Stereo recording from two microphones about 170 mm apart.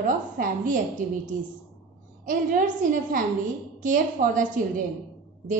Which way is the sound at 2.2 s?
55° right (ahead or behind).